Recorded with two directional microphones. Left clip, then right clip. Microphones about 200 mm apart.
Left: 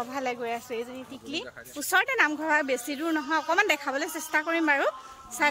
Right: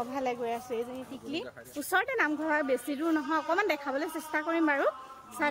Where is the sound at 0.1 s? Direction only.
5° left (ahead or behind).